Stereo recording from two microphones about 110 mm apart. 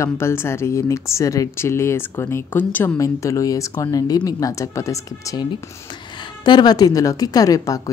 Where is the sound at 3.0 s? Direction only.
30° left (ahead or behind).